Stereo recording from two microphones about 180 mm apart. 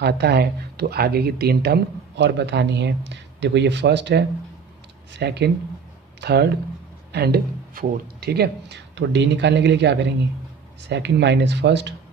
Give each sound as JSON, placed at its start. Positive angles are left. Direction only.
{"t": 0.0, "sound": "speech", "side_deg": -65}